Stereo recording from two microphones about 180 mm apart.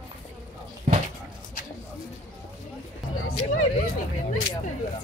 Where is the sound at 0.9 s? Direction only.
40° right (ahead or behind).